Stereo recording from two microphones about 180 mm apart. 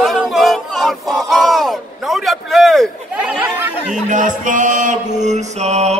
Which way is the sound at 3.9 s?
45° right (ahead or behind).